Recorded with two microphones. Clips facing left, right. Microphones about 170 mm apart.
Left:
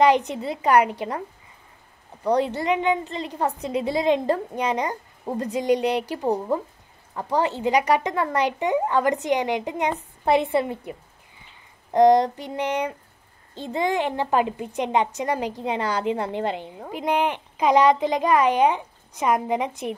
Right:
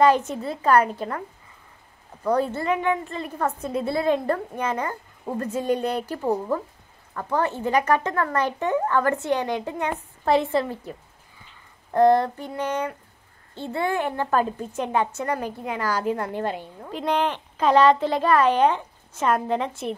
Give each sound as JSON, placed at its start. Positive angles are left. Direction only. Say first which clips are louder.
{"t": 0.0, "sound": "speech", "louder": "even", "side_deg": 15}
{"t": 2.6, "sound": "a woman's voice", "louder": "left 1 dB", "side_deg": 20}